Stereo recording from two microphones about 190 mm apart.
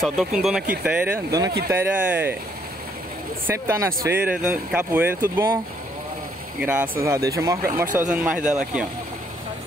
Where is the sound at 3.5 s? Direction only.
15° right (ahead or behind).